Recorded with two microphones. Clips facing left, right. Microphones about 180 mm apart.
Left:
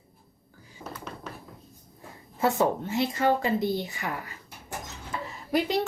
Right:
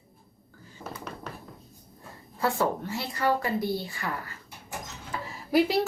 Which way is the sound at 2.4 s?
20° left (ahead or behind).